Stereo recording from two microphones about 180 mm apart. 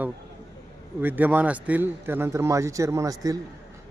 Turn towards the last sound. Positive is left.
turn(degrees=-20)  # may be behind; listen again after turning